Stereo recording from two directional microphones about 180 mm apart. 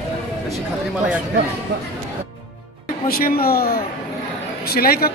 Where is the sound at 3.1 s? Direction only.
55° left (ahead or behind).